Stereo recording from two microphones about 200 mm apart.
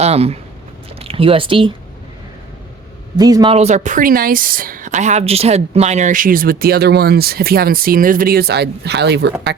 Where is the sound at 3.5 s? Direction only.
35° right (ahead or behind).